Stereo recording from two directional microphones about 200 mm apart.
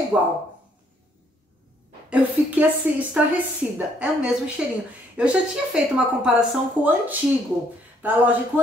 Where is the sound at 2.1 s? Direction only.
5° right (ahead or behind).